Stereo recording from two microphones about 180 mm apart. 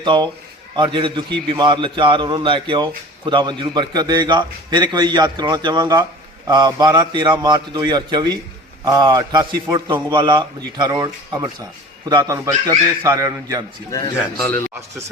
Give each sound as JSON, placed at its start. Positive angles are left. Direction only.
{"t": 0.0, "sound": "a man's voice", "side_deg": -25}
{"t": 13.9, "sound": "a man's voice", "side_deg": 20}